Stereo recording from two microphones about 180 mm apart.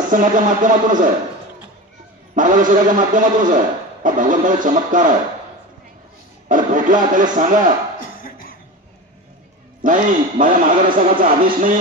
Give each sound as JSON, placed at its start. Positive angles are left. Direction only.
{"t": 0.1, "sound": "a man's voice", "side_deg": -45}
{"t": 2.3, "sound": "a man's voice", "side_deg": -45}
{"t": 6.5, "sound": "a man's voice", "side_deg": -45}
{"t": 9.8, "sound": "a man's voice", "side_deg": -45}